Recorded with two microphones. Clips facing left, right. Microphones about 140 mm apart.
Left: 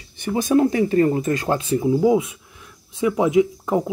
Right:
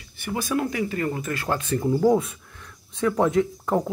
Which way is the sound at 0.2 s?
25° left (ahead or behind).